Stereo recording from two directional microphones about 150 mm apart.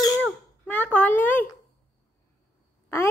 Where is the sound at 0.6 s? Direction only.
10° left (ahead or behind).